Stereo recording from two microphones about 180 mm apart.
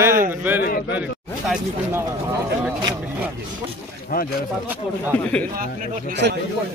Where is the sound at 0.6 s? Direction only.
55° left (ahead or behind).